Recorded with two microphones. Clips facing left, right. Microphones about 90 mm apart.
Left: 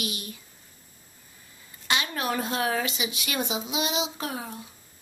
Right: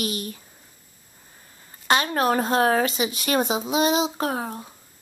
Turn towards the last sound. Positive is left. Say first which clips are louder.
# right 7 dB
turn(degrees=-40)  # may be behind; listen again after turning